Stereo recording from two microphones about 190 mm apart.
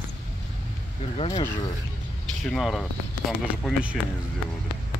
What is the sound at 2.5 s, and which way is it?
Speech, centre (ahead or behind).